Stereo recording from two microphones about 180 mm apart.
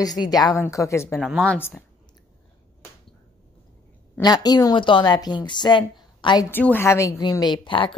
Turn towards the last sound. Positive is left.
turn(degrees=30)  # may be behind; listen again after turning